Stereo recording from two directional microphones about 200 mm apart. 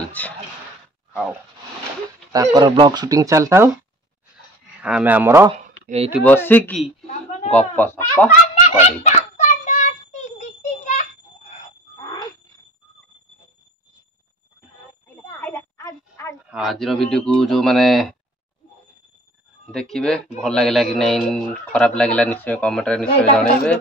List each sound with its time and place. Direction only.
0.2 s speech: 10° left (ahead or behind)
2.3 s speech: 20° right (ahead or behind)
4.8 s speech: 5° right (ahead or behind)
5.5 s a sound: 30° right (ahead or behind)
6.2 s a man's voice: 10° left (ahead or behind)
8.6 s child singing: 35° left (ahead or behind)
10.4 s a sound: 40° left (ahead or behind)
15.3 s a sound: 10° left (ahead or behind)
16.4 s a man's voice: centre (ahead or behind)
19.6 s a man's voice: centre (ahead or behind)